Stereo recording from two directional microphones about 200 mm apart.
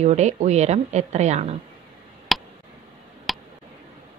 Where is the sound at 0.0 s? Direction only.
35° right (ahead or behind).